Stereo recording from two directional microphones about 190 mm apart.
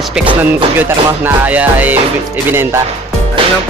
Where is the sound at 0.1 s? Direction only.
5° right (ahead or behind).